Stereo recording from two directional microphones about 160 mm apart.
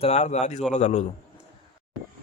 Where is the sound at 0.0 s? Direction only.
45° left (ahead or behind).